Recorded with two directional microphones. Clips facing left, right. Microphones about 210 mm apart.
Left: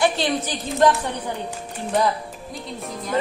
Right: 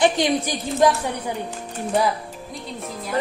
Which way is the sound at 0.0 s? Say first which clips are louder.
Right 2 dB; 15° right (ahead or behind).